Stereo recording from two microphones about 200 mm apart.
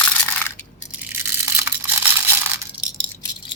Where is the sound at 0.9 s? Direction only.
10° right (ahead or behind).